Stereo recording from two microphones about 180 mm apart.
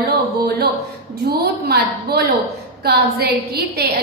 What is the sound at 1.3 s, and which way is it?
A woman's voice, 60° right (ahead or behind).